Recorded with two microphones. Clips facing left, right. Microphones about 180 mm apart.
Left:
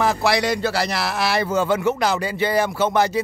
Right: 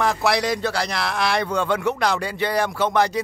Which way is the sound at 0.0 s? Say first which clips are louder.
Left 1 dB; centre (ahead or behind).